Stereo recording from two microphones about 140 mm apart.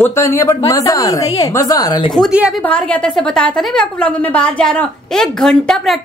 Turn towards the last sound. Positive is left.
turn(degrees=5)  # may be behind; listen again after turning